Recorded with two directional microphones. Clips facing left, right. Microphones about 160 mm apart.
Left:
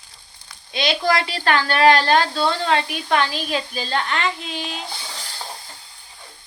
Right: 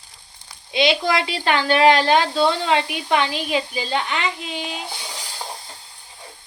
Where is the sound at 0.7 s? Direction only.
20° right (ahead or behind).